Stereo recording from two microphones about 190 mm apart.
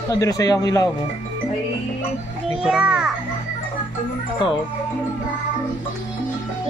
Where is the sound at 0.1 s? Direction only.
20° left (ahead or behind).